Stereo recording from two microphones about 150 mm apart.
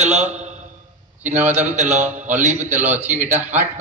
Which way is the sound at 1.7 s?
55° right (ahead or behind).